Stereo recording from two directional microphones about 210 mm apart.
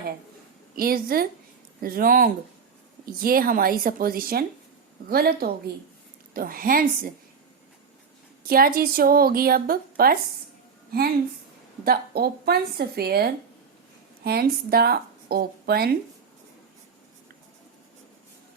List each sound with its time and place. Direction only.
0.8 s speech: 45° right (ahead or behind)
8.4 s speech: 45° right (ahead or behind)
11.9 s speech: 45° right (ahead or behind)